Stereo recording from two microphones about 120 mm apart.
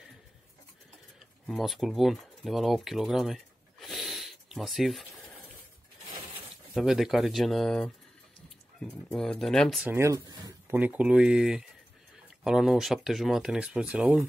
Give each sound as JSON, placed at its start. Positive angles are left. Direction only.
{"t": 1.5, "sound": "speech", "side_deg": 0}
{"t": 6.7, "sound": "speech", "side_deg": 0}
{"t": 9.1, "sound": "speech", "side_deg": 0}
{"t": 9.8, "sound": "speech", "side_deg": -25}